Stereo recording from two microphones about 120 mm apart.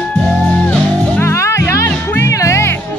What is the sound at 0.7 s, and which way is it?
Music, 20° left (ahead or behind).